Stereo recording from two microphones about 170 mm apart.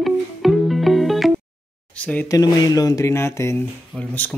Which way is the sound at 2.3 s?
25° left (ahead or behind).